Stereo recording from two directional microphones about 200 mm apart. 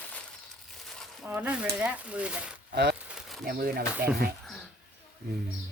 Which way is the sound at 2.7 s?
55° right (ahead or behind).